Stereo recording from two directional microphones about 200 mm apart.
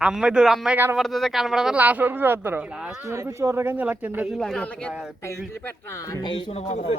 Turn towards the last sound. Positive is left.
turn(degrees=35)  # may be behind; listen again after turning